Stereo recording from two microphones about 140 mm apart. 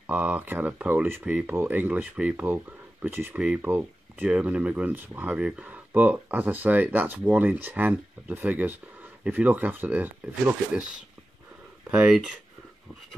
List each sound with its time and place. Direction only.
0.0 s speech: 10° right (ahead or behind)